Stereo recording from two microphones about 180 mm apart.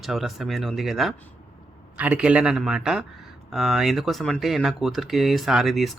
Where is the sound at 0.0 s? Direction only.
Centre (ahead or behind).